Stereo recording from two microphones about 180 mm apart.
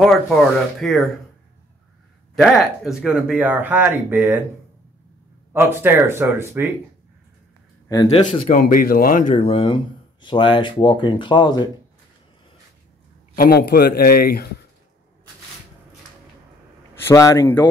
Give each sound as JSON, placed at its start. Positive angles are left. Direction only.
{"t": 0.0, "sound": "speech", "side_deg": 0}
{"t": 2.3, "sound": "speech", "side_deg": 0}
{"t": 5.5, "sound": "speech", "side_deg": -10}
{"t": 7.9, "sound": "speech", "side_deg": 25}
{"t": 8.5, "sound": "speech", "side_deg": 50}
{"t": 13.4, "sound": "a man's voice", "side_deg": 60}
{"t": 17.0, "sound": "speech", "side_deg": 15}